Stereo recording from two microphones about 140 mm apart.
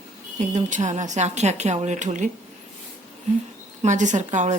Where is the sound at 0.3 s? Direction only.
60° right (ahead or behind).